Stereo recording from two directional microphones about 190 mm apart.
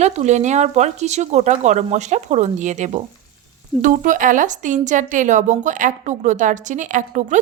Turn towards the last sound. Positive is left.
turn(degrees=-40)  # may be behind; listen again after turning